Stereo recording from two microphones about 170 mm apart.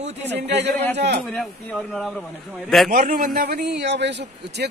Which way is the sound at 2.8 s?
55° right (ahead or behind).